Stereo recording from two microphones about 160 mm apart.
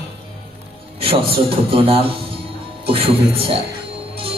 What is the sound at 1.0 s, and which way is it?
A man's voice, 35° right (ahead or behind).